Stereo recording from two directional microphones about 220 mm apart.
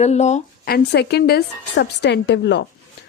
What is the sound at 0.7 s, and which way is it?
A woman's voice, 50° left (ahead or behind).